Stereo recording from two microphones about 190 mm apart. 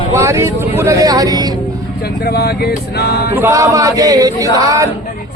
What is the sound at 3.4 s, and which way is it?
Speech, 15° right (ahead or behind).